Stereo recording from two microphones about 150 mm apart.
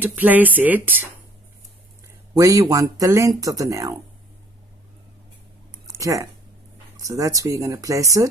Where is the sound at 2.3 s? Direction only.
20° right (ahead or behind).